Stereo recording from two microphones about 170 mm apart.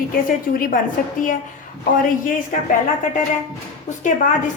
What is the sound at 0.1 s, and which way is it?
A woman's voice, 55° left (ahead or behind).